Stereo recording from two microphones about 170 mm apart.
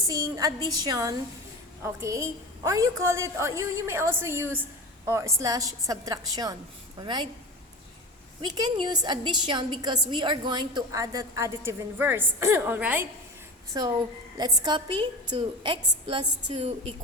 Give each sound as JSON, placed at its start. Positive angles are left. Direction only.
{"t": 0.1, "sound": "a woman's voice", "side_deg": -20}
{"t": 8.4, "sound": "a woman's voice", "side_deg": -25}
{"t": 14.3, "sound": "a woman's voice", "side_deg": -20}